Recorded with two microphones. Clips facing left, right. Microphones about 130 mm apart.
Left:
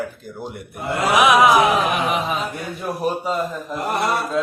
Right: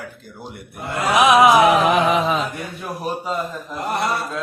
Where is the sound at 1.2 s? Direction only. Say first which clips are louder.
Right 2 dB; 25° right (ahead or behind).